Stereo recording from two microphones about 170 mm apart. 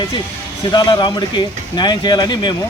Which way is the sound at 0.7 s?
25° left (ahead or behind).